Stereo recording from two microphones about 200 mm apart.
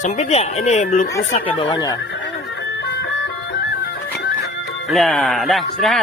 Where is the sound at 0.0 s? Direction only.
35° left (ahead or behind).